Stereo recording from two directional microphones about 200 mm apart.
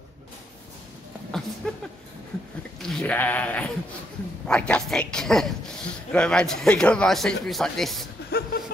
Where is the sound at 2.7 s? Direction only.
Centre (ahead or behind).